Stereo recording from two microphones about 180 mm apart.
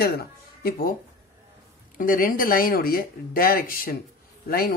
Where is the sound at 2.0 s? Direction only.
50° left (ahead or behind).